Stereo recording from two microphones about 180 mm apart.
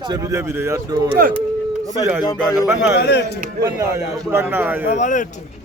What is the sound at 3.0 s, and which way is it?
Speech, 65° left (ahead or behind).